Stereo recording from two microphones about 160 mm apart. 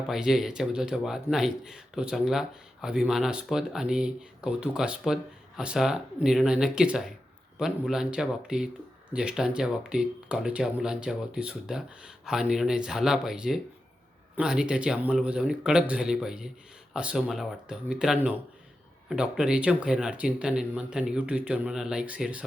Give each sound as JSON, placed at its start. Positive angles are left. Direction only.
{"t": 0.1, "sound": "speech", "side_deg": -5}